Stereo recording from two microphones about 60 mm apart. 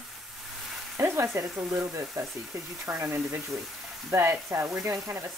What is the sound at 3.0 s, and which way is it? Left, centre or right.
Speech, right.